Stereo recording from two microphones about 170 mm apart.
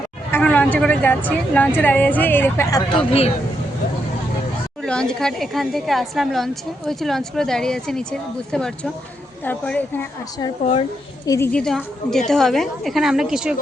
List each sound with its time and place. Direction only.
0.3 s a woman's voice: 10° left (ahead or behind)
3.1 s speech: 35° left (ahead or behind)
4.8 s a woman's voice: 5° left (ahead or behind)
11.3 s a woman's voice: 15° left (ahead or behind)
11.6 s speech: 5° left (ahead or behind)